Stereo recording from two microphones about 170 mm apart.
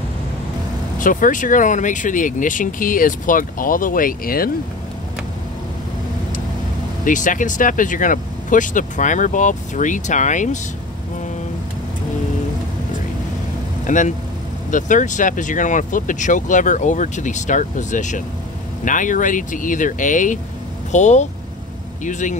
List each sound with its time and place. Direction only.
0.9 s speech: 50° left (ahead or behind)
7.1 s speech: 50° left (ahead or behind)
13.8 s speech: 45° left (ahead or behind)